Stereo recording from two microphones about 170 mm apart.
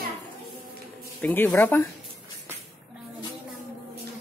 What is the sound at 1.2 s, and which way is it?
Speech, 10° left (ahead or behind).